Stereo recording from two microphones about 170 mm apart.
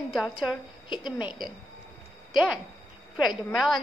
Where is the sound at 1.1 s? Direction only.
10° right (ahead or behind).